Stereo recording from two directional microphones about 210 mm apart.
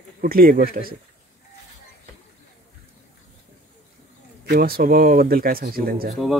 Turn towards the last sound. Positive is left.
turn(degrees=-45)  # may be behind; listen again after turning